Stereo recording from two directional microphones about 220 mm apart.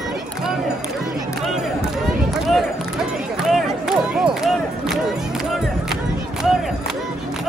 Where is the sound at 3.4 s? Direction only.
Centre (ahead or behind).